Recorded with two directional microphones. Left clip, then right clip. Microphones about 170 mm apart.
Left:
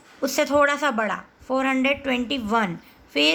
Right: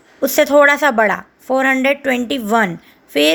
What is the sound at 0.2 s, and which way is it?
A woman's voice, 30° right (ahead or behind).